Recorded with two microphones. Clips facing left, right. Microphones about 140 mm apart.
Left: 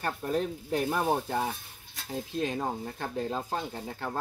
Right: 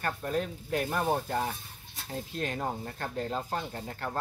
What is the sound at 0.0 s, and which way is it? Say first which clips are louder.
Speech: left 2 dB; 15° left (ahead or behind).